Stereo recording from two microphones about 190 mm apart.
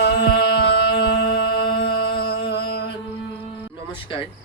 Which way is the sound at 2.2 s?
55° left (ahead or behind).